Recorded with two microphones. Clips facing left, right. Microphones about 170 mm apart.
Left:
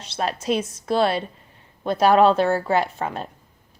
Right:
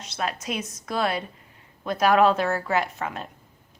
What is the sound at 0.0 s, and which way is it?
A woman's voice, 30° left (ahead or behind).